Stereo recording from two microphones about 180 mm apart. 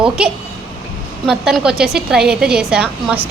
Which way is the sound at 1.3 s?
5° right (ahead or behind).